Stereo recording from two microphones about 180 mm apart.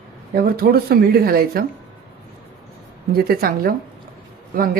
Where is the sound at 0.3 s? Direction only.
60° right (ahead or behind).